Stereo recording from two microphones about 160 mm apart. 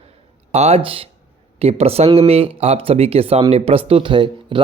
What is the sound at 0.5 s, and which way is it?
Speech, 40° right (ahead or behind).